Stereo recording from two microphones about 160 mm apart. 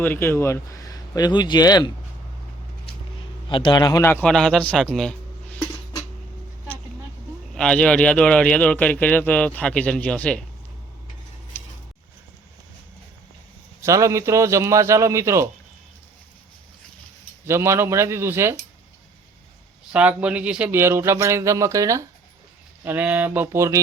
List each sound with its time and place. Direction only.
0.0 s speech: 15° left (ahead or behind)
3.5 s speech: 30° left (ahead or behind)
4.0 s a man's voice: 10° left (ahead or behind)
7.5 s a man's voice: 5° left (ahead or behind)
13.8 s a man's voice: 20° right (ahead or behind)
17.4 s a man's voice: 15° right (ahead or behind)
19.9 s a man's voice: 10° right (ahead or behind)